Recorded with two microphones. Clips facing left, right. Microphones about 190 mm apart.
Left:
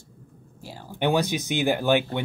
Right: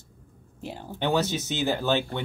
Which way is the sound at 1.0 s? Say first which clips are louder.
Left 2 dB; 15° left (ahead or behind).